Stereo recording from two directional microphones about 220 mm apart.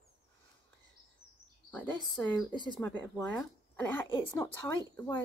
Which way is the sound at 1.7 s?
10° left (ahead or behind).